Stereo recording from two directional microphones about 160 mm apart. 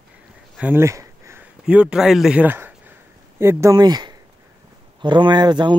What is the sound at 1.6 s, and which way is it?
A man's voice, 5° right (ahead or behind).